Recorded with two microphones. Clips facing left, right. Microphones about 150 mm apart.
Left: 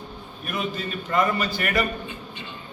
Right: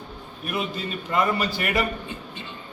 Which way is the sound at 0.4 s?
15° right (ahead or behind).